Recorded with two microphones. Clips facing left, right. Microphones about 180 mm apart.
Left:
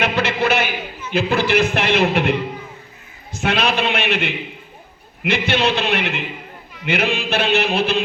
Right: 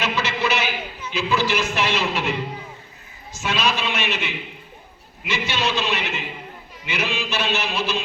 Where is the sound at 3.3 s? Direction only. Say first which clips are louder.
Left 4 dB; 60° left (ahead or behind).